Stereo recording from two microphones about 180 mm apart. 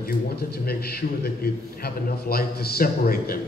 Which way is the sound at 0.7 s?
60° left (ahead or behind).